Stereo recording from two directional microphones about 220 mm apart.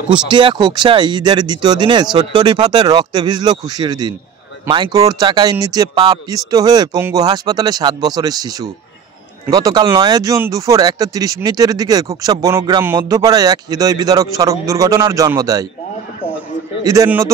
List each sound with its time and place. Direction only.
0.1 s speech: 20° right (ahead or behind)
16.8 s speech: 15° right (ahead or behind)